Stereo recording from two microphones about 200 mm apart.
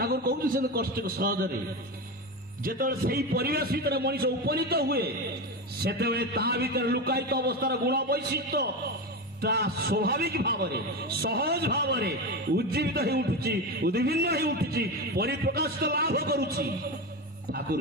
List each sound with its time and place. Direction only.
0.0 s a man's voice: 50° right (ahead or behind)
2.6 s a man's voice: 45° right (ahead or behind)